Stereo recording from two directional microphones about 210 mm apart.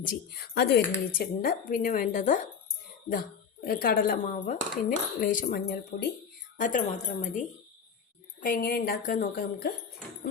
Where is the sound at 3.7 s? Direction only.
45° left (ahead or behind).